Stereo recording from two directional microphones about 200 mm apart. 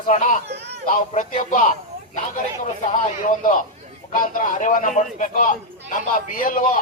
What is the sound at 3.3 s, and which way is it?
A man's voice, 40° left (ahead or behind).